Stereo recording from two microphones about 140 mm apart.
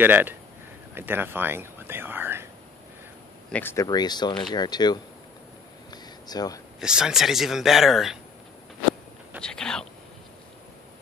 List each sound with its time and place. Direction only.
0.0 s speech: 15° right (ahead or behind)
3.5 s speech: 15° left (ahead or behind)
3.8 s speech: 30° left (ahead or behind)
5.9 s a sound: 30° left (ahead or behind)
6.8 s speech: 5° right (ahead or behind)
9.4 s speech: 5° left (ahead or behind)